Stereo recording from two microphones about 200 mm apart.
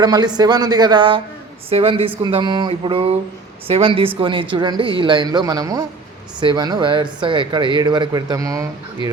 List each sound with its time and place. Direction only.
0.0 s speech: 20° right (ahead or behind)